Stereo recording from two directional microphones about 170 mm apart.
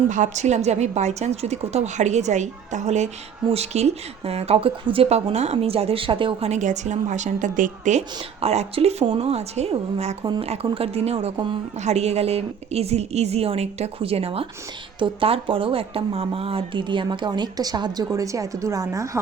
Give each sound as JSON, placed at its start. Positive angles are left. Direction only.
{"t": 0.1, "sound": "a woman's voice", "side_deg": -45}